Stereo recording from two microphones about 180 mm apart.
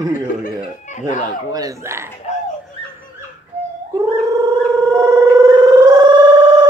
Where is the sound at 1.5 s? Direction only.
20° right (ahead or behind).